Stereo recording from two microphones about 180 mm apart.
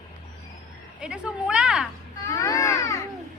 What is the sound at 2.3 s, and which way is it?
Baby cry, 20° left (ahead or behind).